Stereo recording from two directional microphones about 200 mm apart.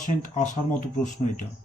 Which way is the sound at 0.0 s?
40° left (ahead or behind).